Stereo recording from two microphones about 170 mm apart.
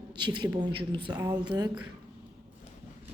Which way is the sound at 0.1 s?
25° right (ahead or behind).